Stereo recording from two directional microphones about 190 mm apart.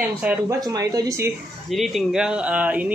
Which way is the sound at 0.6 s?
20° right (ahead or behind).